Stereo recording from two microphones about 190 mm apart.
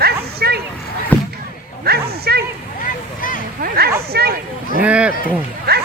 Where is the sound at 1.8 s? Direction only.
55° right (ahead or behind).